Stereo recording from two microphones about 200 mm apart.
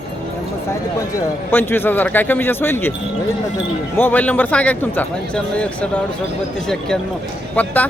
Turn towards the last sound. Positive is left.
turn(degrees=10)  # may be behind; listen again after turning